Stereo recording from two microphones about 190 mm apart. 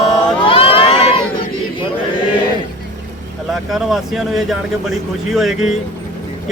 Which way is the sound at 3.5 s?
Centre (ahead or behind).